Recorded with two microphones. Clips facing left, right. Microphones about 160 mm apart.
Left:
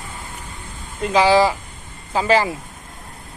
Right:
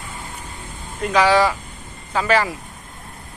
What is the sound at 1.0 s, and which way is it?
Speech, 25° left (ahead or behind).